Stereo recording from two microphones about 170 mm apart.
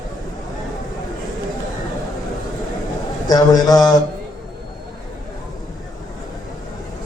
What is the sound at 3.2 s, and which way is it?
Speech, 25° left (ahead or behind).